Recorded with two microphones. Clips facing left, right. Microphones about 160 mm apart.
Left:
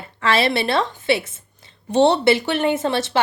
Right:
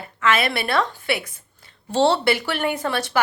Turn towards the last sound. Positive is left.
turn(degrees=25)  # may be behind; listen again after turning